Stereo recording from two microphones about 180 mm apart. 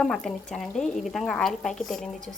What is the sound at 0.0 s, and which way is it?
Speech, centre (ahead or behind).